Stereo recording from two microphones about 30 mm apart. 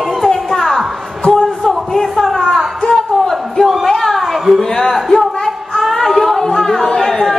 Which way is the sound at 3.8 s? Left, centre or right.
Centre.